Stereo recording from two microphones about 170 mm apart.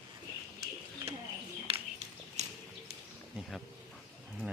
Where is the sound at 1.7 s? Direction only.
35° right (ahead or behind).